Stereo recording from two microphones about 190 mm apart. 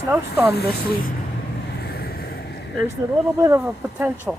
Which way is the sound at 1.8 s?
55° left (ahead or behind).